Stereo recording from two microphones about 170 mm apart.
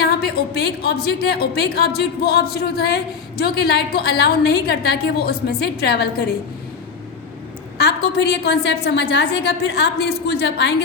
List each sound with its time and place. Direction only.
0.0 s a woman's voice: 70° left (ahead or behind)
7.8 s a woman's voice: 80° left